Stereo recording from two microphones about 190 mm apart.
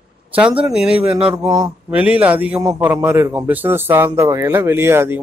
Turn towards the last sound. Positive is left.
turn(degrees=-15)  # may be behind; listen again after turning